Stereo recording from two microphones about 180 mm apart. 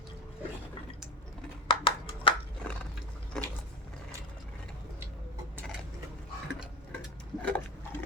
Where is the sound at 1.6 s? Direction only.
30° left (ahead or behind).